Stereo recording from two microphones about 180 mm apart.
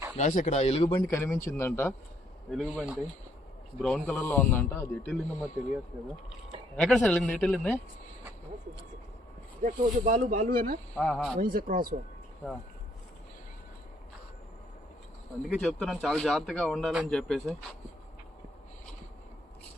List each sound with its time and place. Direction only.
0.2 s speech: 45° left (ahead or behind)
0.9 s a man's voice: 15° left (ahead or behind)
2.5 s a man's voice: centre (ahead or behind)
5.0 s speech: 5° right (ahead or behind)
9.6 s speech: 45° right (ahead or behind)
10.9 s speech: 5° left (ahead or behind)
11.3 s speech: 50° right (ahead or behind)
15.4 s speech: centre (ahead or behind)